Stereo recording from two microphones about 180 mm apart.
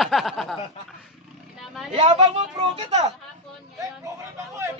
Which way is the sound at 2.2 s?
25° right (ahead or behind).